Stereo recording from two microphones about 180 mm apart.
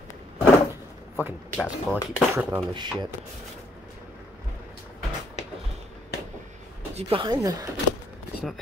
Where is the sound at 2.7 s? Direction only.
25° right (ahead or behind).